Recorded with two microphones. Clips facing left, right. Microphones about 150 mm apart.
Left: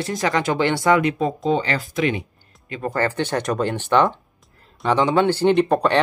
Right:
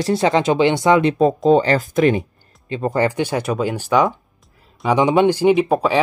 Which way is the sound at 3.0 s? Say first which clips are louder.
Right 2 dB; 10° right (ahead or behind).